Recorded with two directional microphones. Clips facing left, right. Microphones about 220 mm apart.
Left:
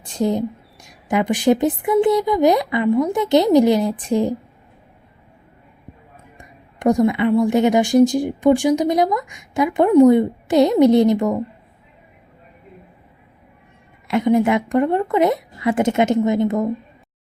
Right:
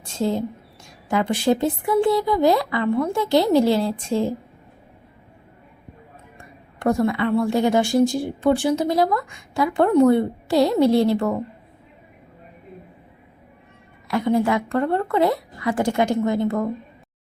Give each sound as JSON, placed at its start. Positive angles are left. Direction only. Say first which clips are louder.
{"t": 0.0, "sound": "a woman's voice", "louder": "left 3 dB", "side_deg": 15}
{"t": 6.8, "sound": "a woman's voice", "louder": "left 4 dB", "side_deg": 15}
{"t": 14.1, "sound": "speech", "louder": "left 4 dB", "side_deg": 20}